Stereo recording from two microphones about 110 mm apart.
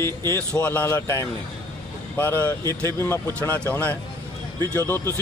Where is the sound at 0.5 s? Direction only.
15° left (ahead or behind).